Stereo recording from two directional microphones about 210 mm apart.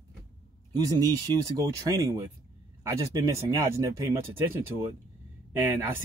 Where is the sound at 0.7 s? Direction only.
20° right (ahead or behind).